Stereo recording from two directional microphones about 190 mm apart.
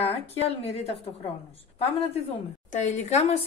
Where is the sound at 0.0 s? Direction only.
30° left (ahead or behind).